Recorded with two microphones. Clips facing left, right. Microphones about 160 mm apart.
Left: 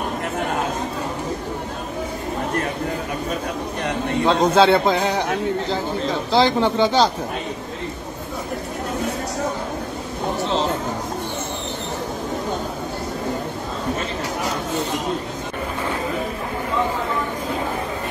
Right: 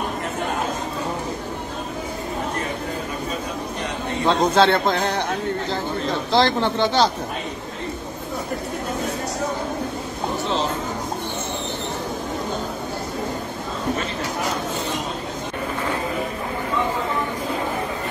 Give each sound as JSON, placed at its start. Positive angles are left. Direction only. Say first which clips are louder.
{"t": 4.3, "sound": "a man's voice", "louder": "left 2 dB", "side_deg": 5}
{"t": 6.3, "sound": "speech", "louder": "left 2 dB", "side_deg": 10}